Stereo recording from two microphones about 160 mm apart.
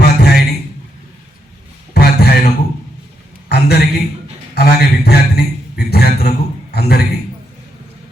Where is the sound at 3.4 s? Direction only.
85° left.